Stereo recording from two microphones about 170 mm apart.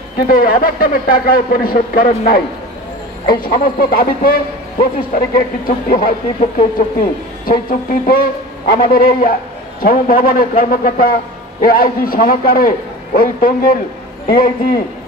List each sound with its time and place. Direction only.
0.3 s a man's voice: 55° left (ahead or behind)